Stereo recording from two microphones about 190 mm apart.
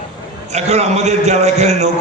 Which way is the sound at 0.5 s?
35° right (ahead or behind).